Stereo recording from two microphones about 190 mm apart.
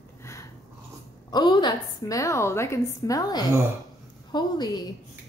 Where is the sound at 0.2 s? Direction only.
15° left (ahead or behind).